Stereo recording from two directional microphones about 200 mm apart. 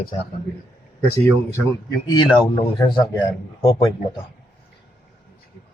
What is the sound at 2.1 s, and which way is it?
A man's voice, 20° left (ahead or behind).